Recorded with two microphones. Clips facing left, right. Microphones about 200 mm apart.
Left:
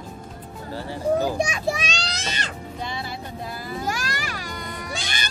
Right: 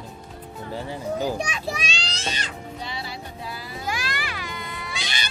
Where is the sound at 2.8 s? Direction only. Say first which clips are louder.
Left 4 dB; 50° left (ahead or behind).